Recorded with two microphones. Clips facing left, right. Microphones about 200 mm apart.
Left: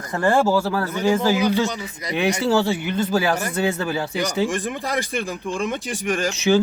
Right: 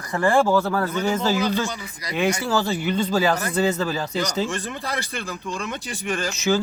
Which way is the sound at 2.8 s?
5° left (ahead or behind).